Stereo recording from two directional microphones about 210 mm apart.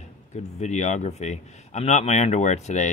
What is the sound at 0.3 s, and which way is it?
A man's voice, 35° left (ahead or behind).